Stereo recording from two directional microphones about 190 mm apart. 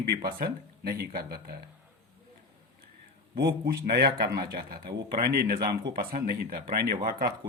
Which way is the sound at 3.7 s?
50° right (ahead or behind).